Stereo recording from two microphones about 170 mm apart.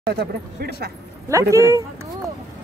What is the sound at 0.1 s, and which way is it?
Speech, 70° right (ahead or behind).